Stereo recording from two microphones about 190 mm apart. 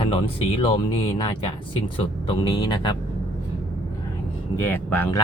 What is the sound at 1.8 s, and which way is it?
Speech, 25° left (ahead or behind).